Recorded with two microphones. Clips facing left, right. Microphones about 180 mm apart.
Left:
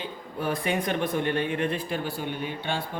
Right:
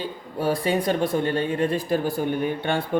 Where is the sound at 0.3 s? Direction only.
35° right (ahead or behind).